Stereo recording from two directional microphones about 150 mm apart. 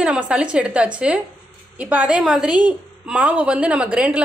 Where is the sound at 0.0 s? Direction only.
5° right (ahead or behind).